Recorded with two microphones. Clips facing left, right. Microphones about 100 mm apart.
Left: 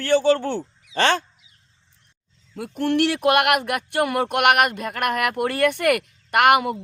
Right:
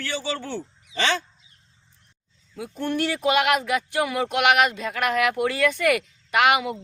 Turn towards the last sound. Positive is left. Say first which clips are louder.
# left 3 dB
turn(degrees=55)  # may be behind; listen again after turning